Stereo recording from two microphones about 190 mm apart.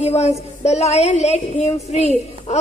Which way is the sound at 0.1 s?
35° left (ahead or behind).